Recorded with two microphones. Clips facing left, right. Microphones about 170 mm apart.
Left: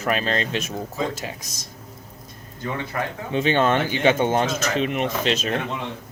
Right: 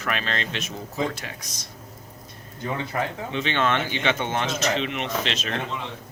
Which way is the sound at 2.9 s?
20° right (ahead or behind).